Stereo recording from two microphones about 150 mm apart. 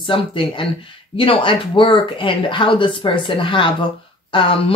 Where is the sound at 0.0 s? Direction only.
35° left (ahead or behind).